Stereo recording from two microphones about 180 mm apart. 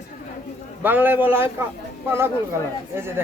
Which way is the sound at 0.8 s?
10° right (ahead or behind).